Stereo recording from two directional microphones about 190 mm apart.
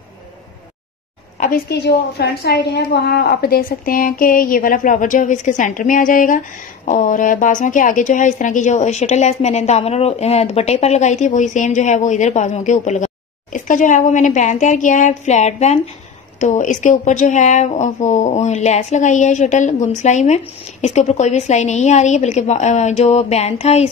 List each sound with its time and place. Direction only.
1.4 s a woman's voice: 55° left (ahead or behind); by 23.9 s 35° left (ahead or behind)